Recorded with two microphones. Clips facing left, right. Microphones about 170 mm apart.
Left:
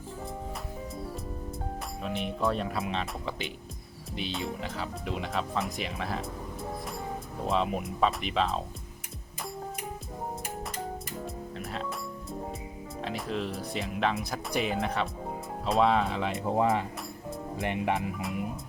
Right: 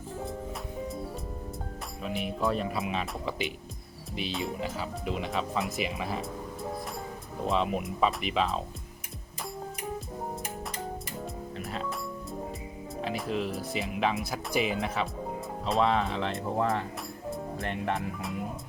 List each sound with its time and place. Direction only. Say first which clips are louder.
2.1 s speech: even; centre (ahead or behind)
7.4 s speech: right 1 dB; centre (ahead or behind)
11.5 s music: right 1 dB; centre (ahead or behind)
13.0 s speech: right 2 dB; 5° right (ahead or behind)
16.6 s speech: left 3 dB; 15° left (ahead or behind)